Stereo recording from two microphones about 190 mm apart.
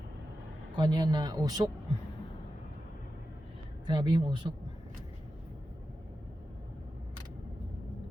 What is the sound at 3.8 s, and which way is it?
Speech, 25° right (ahead or behind).